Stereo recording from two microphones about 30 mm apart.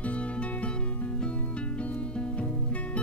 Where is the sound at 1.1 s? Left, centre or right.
Left.